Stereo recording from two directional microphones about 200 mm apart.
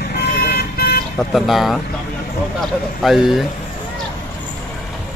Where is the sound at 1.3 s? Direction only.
Centre (ahead or behind).